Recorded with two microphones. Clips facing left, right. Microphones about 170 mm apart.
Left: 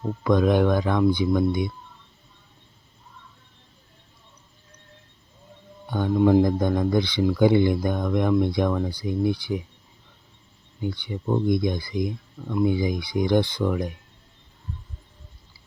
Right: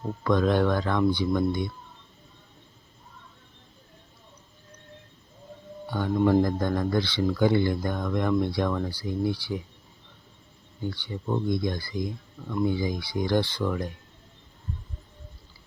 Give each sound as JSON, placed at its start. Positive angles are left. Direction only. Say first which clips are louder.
{"t": 0.3, "sound": "speech", "louder": "left 3 dB", "side_deg": 15}
{"t": 5.9, "sound": "speech", "louder": "left 3 dB", "side_deg": 15}
{"t": 10.8, "sound": "speech", "louder": "left 3 dB", "side_deg": 15}